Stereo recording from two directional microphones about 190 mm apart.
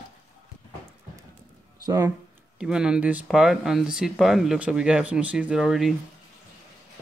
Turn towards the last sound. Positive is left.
turn(degrees=0)  # may be behind; listen again after turning